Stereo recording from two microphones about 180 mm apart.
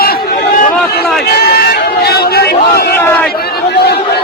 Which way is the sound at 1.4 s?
60° left (ahead or behind).